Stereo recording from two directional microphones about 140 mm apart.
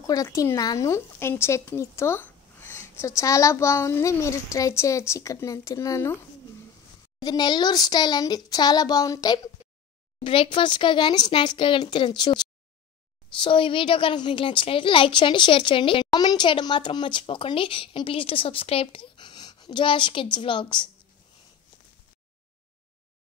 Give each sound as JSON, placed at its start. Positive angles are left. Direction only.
{"t": 0.0, "sound": "speech", "side_deg": 25}
{"t": 7.2, "sound": "speech", "side_deg": 30}
{"t": 10.2, "sound": "a woman's voice", "side_deg": 40}